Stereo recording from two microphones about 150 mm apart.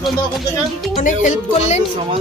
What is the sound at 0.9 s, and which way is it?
Speech, 60° left (ahead or behind).